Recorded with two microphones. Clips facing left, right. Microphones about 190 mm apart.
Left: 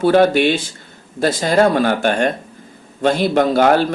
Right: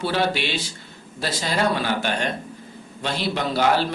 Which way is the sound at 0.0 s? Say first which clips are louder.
Left 11 dB; 50° left (ahead or behind).